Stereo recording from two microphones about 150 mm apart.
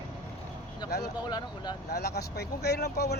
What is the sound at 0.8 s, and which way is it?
Speech, 90° left.